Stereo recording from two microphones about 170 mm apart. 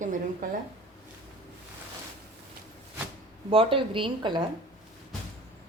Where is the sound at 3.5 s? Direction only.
30° right (ahead or behind).